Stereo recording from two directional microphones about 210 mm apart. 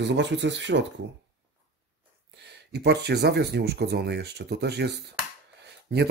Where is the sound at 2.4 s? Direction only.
55° right (ahead or behind).